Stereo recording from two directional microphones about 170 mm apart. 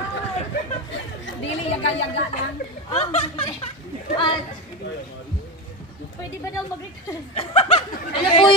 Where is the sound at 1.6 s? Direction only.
40° left (ahead or behind).